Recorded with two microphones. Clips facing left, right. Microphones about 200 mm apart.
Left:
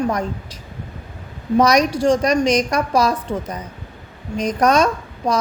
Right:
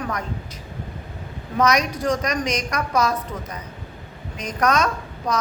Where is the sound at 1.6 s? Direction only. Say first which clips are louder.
Left 4 dB; 35° left (ahead or behind).